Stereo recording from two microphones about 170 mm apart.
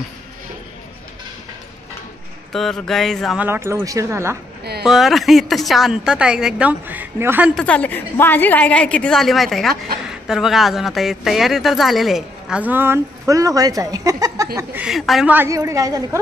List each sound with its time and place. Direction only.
2.5 s a woman's voice: centre (ahead or behind)
3.3 s speech: 15° right (ahead or behind)
4.8 s a woman's voice: centre (ahead or behind)
7.5 s a woman's voice: 5° left (ahead or behind)
15.3 s a woman's voice: 15° right (ahead or behind)